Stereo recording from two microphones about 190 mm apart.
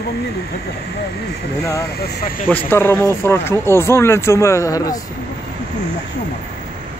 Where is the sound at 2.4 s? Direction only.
10° left (ahead or behind).